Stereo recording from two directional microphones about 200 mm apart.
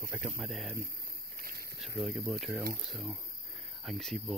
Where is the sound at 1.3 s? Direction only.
45° right (ahead or behind).